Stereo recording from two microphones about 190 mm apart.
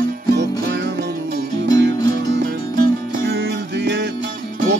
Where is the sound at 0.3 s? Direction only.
65° right (ahead or behind).